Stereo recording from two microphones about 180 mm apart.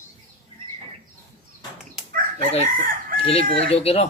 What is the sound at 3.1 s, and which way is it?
Speech, 30° left (ahead or behind).